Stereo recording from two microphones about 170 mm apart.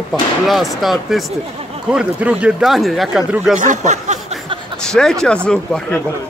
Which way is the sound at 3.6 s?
45° right (ahead or behind).